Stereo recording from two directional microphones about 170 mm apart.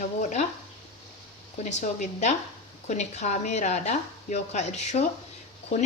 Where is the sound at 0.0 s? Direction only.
45° left (ahead or behind).